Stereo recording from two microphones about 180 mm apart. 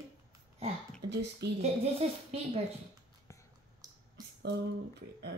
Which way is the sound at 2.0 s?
35° right (ahead or behind).